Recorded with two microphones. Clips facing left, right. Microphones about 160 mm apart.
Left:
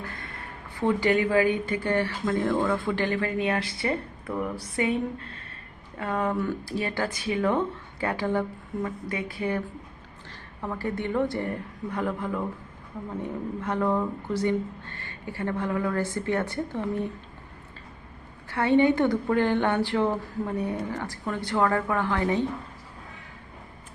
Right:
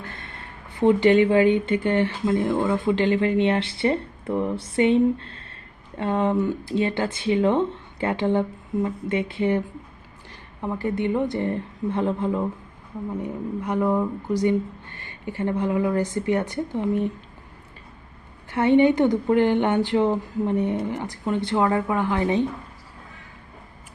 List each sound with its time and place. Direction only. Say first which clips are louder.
0.0 s speech: even; 25° right (ahead or behind)
10.6 s speech: right 5 dB; 20° right (ahead or behind)
18.5 s speech: right 4 dB; 20° right (ahead or behind)